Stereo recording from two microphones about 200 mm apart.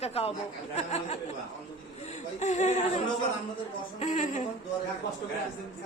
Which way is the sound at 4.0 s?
35° left (ahead or behind).